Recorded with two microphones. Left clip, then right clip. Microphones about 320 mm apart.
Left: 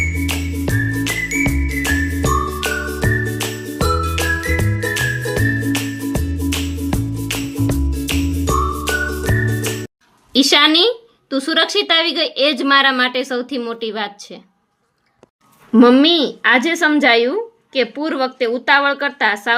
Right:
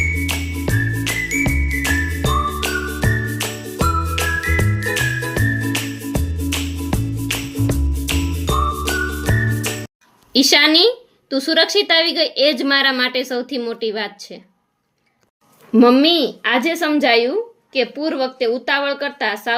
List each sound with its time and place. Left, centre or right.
0.2 s music: centre
10.3 s speech: centre
15.7 s speech: centre